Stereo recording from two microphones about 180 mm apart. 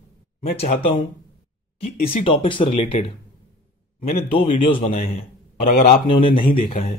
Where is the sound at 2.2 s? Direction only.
30° left (ahead or behind).